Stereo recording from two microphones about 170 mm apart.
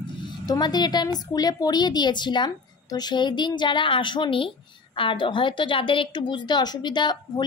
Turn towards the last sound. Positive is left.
turn(degrees=25)  # may be behind; listen again after turning